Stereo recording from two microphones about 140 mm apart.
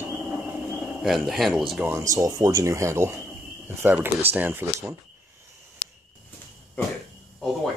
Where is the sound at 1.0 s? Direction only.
Centre (ahead or behind).